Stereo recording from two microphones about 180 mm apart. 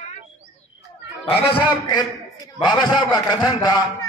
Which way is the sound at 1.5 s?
25° left (ahead or behind).